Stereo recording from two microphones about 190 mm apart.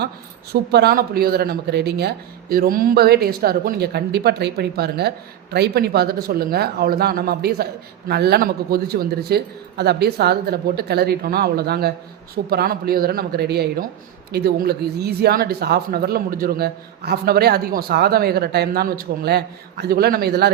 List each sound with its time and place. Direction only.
0.5 s a man's voice: 60° right (ahead or behind)